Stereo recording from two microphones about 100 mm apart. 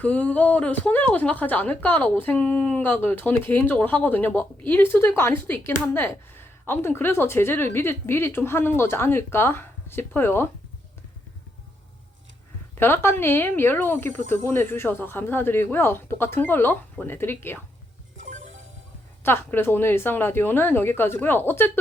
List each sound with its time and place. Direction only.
0.0 s speech: 15° left (ahead or behind)
12.7 s speech: 25° left (ahead or behind)
19.2 s speech: 20° left (ahead or behind)